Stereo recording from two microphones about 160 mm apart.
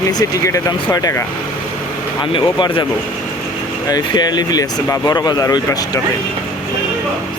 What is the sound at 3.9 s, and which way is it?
Speech, 25° left (ahead or behind).